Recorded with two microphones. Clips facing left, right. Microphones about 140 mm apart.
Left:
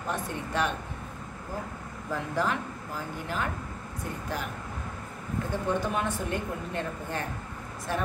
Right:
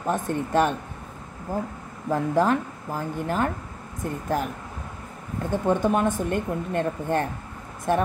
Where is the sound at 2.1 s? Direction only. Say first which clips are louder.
Right 8 dB; 45° right (ahead or behind).